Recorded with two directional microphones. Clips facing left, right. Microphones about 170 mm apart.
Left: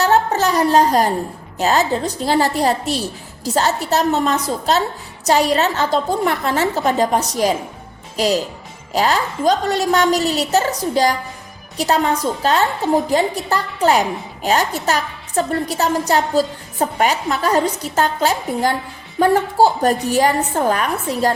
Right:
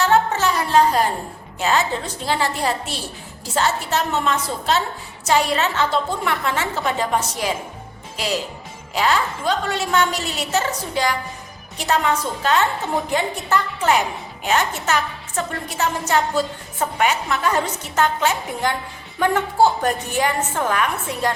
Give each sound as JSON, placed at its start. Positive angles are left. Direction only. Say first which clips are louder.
{"t": 0.0, "sound": "music", "louder": "left 2 dB", "side_deg": 40}
{"t": 1.5, "sound": "a woman's voice", "louder": "left 4 dB", "side_deg": 40}